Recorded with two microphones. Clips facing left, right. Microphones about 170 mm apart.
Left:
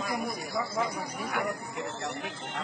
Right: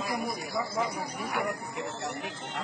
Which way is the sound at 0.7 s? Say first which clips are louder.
Even; 20° right (ahead or behind).